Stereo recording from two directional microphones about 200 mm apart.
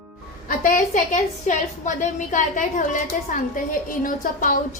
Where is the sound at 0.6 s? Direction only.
40° left (ahead or behind).